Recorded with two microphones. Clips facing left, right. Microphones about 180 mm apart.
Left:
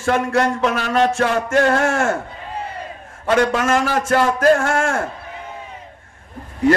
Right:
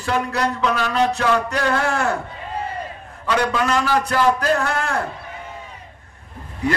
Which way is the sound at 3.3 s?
45° left (ahead or behind).